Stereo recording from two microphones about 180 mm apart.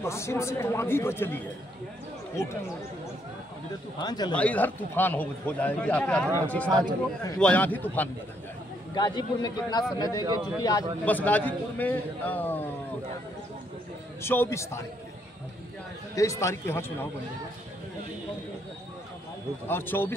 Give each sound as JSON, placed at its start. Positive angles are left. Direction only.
{"t": 0.0, "sound": "a man's voice", "side_deg": 15}
{"t": 4.0, "sound": "a man's voice", "side_deg": 20}
{"t": 4.4, "sound": "a man's voice", "side_deg": 10}
{"t": 8.9, "sound": "a man's voice", "side_deg": 25}
{"t": 11.1, "sound": "a man's voice", "side_deg": 10}
{"t": 14.2, "sound": "a man's voice", "side_deg": 15}
{"t": 16.2, "sound": "a man's voice", "side_deg": 15}
{"t": 19.7, "sound": "a man's voice", "side_deg": 10}